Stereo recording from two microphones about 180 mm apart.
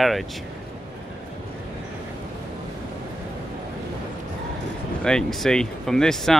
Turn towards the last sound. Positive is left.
turn(degrees=5)  # may be behind; listen again after turning